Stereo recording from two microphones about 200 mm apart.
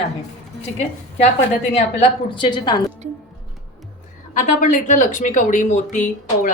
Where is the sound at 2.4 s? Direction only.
20° left (ahead or behind).